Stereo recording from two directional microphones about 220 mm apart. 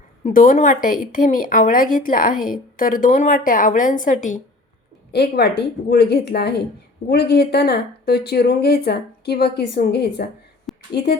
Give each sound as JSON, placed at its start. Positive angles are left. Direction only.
{"t": 0.3, "sound": "speech", "side_deg": 35}
{"t": 5.1, "sound": "speech", "side_deg": 50}
{"t": 10.7, "sound": "a sound", "side_deg": 0}